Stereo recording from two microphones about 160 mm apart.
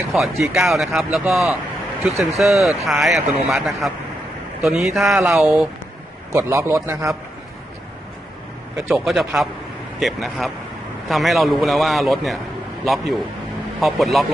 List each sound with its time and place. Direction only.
0.1 s speech: centre (ahead or behind)
6.3 s a man's voice: 20° right (ahead or behind)
8.9 s speech: centre (ahead or behind)